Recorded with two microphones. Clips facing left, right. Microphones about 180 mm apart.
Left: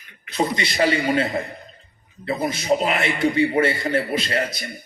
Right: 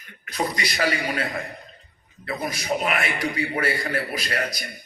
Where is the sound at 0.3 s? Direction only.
25° left (ahead or behind).